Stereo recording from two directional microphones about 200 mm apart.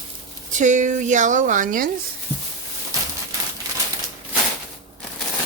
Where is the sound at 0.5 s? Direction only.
40° right (ahead or behind).